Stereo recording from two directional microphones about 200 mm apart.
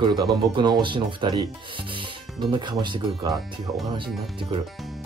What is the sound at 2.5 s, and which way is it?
Speech, 25° right (ahead or behind).